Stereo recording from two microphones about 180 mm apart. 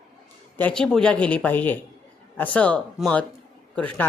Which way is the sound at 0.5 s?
5° left (ahead or behind).